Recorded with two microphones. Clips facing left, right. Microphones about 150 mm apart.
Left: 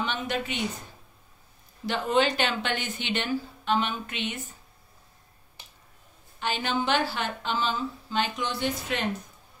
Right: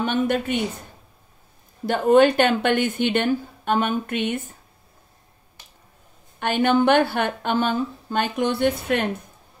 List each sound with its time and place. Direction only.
0.0 s a woman's voice: 50° right (ahead or behind)
1.9 s a woman's voice: 50° right (ahead or behind)
6.4 s a woman's voice: 55° right (ahead or behind)